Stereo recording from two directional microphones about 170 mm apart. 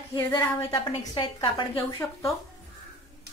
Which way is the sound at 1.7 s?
15° left (ahead or behind).